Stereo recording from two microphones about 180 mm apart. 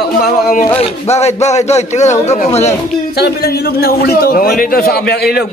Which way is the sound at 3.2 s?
60° left (ahead or behind).